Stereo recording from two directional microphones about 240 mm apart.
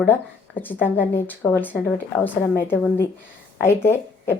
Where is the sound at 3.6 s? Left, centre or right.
Centre.